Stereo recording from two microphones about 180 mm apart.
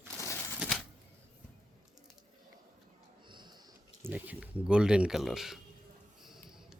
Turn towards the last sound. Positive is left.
turn(degrees=0)  # may be behind; listen again after turning